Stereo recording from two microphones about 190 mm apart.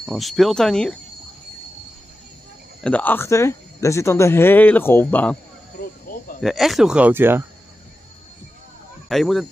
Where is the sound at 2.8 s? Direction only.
5° left (ahead or behind).